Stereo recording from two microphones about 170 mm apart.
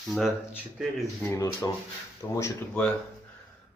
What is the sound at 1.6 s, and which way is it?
Speech, 15° left (ahead or behind).